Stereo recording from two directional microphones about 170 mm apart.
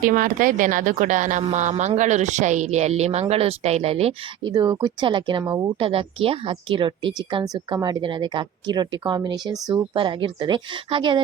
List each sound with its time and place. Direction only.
0.0 s speech: 55° right (ahead or behind); by 4.5 s 35° right (ahead or behind)
4.5 s a woman's voice: 25° right (ahead or behind)